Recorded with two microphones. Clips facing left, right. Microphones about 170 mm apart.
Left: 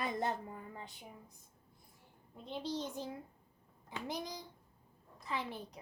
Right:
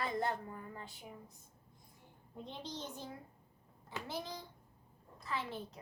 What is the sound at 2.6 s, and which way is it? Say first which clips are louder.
A child's voice: left 7 dB; 10° left (ahead or behind).